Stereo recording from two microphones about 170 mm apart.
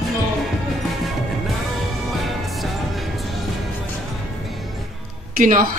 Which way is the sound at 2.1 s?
Centre (ahead or behind).